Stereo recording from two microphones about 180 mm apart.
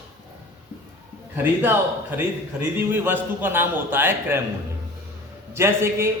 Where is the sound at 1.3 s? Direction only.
10° right (ahead or behind).